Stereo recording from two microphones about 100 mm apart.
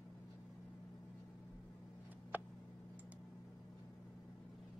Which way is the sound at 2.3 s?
20° right (ahead or behind).